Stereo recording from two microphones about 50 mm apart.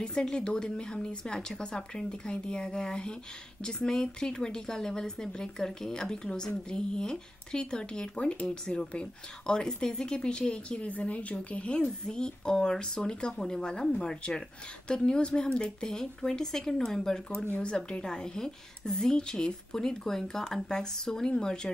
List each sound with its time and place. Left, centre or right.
0.0 s speech: centre
10.9 s speech: left